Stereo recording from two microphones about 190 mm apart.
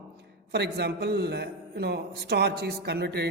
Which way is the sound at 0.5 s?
60° right (ahead or behind).